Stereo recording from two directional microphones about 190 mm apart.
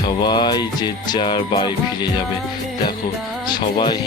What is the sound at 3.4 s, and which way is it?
Speech, 20° left (ahead or behind).